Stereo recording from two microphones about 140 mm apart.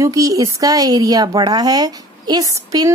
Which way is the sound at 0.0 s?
25° right (ahead or behind).